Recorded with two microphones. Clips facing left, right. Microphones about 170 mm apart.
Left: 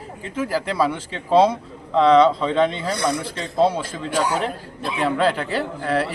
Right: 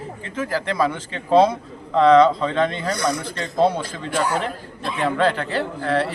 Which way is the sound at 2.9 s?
30° left (ahead or behind).